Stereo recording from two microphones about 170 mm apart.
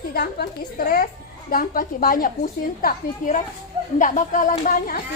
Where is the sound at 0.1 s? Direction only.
65° left (ahead or behind).